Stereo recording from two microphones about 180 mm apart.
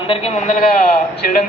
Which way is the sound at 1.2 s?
55° left (ahead or behind).